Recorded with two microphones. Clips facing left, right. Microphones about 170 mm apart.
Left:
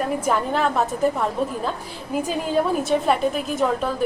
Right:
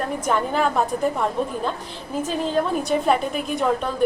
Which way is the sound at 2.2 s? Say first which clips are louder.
Even; 5° left (ahead or behind).